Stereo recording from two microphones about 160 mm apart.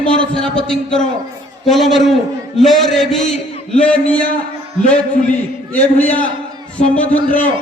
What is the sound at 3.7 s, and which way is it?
Speech, 10° left (ahead or behind).